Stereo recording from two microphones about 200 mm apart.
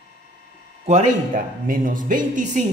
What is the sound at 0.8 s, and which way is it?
Speech, 35° right (ahead or behind).